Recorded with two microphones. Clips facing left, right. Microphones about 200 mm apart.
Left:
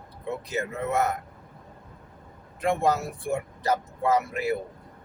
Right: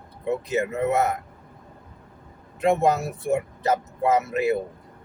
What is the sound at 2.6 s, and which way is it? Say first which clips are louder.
Speech: right 4 dB; 25° right (ahead or behind).